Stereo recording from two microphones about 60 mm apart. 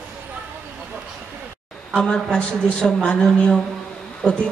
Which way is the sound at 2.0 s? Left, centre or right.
Centre.